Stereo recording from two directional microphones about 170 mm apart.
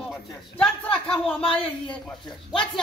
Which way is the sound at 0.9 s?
5° left (ahead or behind).